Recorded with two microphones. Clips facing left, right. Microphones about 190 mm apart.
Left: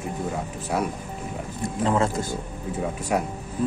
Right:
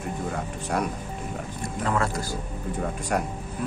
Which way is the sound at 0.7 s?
5° left (ahead or behind).